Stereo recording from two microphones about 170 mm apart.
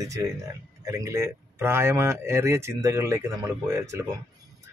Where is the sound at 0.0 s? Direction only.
20° right (ahead or behind).